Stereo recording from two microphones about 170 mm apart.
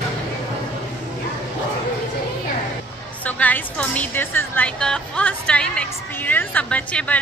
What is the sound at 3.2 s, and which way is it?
Speech, 10° left (ahead or behind).